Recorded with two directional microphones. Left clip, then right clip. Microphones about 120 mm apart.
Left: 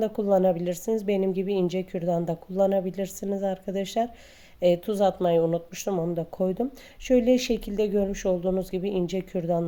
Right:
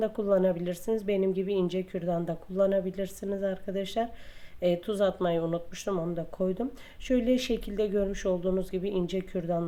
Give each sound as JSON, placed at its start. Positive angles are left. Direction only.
{"t": 0.0, "sound": "speech", "side_deg": 30}